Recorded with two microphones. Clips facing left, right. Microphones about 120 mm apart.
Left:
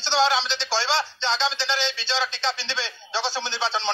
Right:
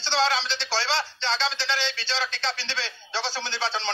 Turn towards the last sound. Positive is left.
turn(degrees=15)  # may be behind; listen again after turning